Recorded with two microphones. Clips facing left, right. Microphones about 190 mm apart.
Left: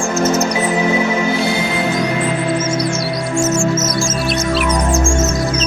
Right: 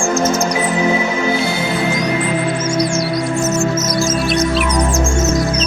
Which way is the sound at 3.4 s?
25° left (ahead or behind).